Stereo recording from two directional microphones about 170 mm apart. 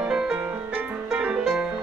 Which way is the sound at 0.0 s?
5° right (ahead or behind).